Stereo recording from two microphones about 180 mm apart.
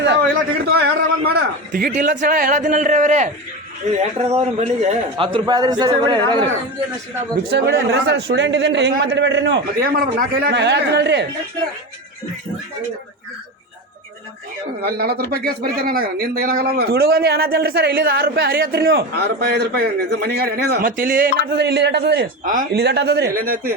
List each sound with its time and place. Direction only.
0.7 s a man's voice: 60° right (ahead or behind); by 6.5 s 25° right (ahead or behind)
7.5 s a man's voice: 65° right (ahead or behind)
14.8 s speech: 60° right (ahead or behind)